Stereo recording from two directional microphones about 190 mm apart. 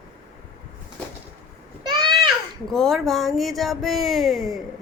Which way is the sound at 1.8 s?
25° right (ahead or behind).